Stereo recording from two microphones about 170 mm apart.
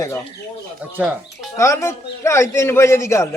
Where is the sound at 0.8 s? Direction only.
5° right (ahead or behind).